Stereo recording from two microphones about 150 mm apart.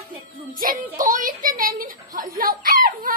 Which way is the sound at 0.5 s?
65° right (ahead or behind).